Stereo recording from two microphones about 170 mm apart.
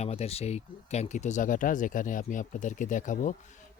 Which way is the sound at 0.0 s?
35° left (ahead or behind).